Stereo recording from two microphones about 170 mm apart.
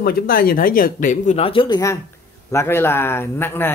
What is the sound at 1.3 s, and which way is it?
Speech, 30° left (ahead or behind).